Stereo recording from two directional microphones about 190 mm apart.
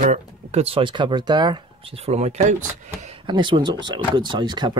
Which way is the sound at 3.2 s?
25° right (ahead or behind).